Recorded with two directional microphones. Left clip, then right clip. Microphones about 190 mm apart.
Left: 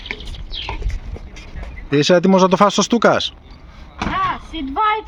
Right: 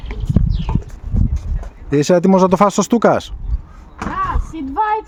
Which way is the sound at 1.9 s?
20° right (ahead or behind).